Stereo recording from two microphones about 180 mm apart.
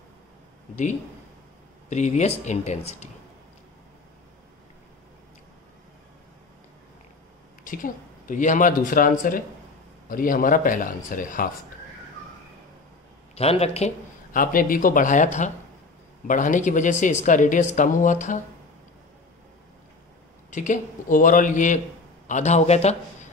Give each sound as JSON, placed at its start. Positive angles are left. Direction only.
{"t": 1.9, "sound": "speech", "side_deg": 40}
{"t": 7.6, "sound": "speech", "side_deg": 50}
{"t": 13.3, "sound": "speech", "side_deg": 35}
{"t": 20.5, "sound": "speech", "side_deg": 45}